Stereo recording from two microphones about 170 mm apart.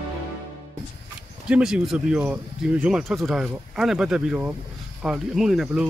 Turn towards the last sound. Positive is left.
turn(degrees=0)  # may be behind; listen again after turning